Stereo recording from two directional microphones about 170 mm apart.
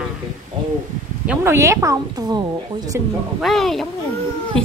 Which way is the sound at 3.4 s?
Centre (ahead or behind).